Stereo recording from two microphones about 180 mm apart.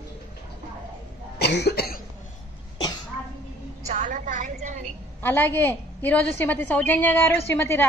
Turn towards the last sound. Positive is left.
turn(degrees=15)  # may be behind; listen again after turning